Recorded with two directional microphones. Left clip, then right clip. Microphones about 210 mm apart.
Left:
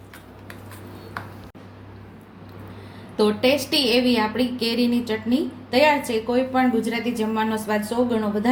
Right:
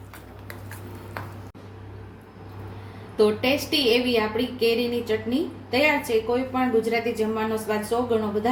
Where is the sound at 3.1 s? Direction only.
35° left (ahead or behind).